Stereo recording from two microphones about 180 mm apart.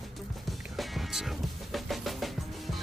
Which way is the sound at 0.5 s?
Centre (ahead or behind).